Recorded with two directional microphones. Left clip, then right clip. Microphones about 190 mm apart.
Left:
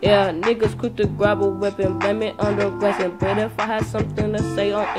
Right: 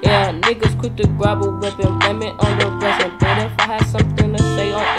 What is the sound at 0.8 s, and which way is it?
Music, 20° left (ahead or behind).